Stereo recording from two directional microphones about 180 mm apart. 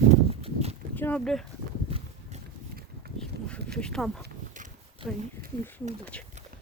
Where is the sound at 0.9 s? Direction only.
10° left (ahead or behind).